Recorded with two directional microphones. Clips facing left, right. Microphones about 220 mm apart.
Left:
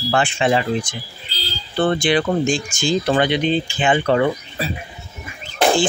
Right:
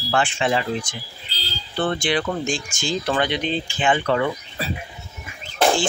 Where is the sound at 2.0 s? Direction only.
15° left (ahead or behind).